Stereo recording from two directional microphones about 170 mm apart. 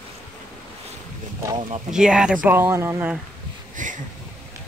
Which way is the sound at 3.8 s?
50° right (ahead or behind).